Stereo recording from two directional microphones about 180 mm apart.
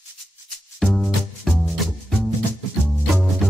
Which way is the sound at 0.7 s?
Centre (ahead or behind).